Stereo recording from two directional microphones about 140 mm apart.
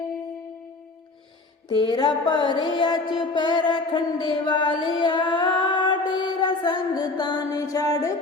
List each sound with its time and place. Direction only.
1.7 s music: 35° left (ahead or behind)
4.9 s female singing: 35° left (ahead or behind)